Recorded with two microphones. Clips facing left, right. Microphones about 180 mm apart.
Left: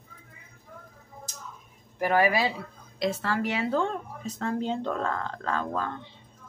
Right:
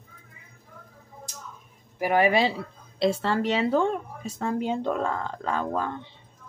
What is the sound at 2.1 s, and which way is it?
Speech, 25° right (ahead or behind).